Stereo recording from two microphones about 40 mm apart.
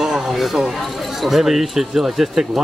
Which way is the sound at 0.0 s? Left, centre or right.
Centre.